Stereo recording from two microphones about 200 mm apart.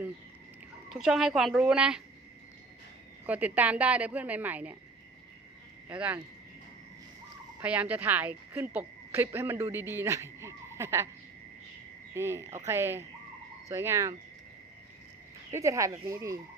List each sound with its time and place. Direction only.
0.9 s speech: centre (ahead or behind)
3.2 s a woman's voice: 5° right (ahead or behind)
5.9 s a woman's voice: 5° right (ahead or behind)
7.6 s a woman's voice: 5° right (ahead or behind)
12.1 s a woman's voice: 15° right (ahead or behind)
15.5 s a woman's voice: 15° right (ahead or behind)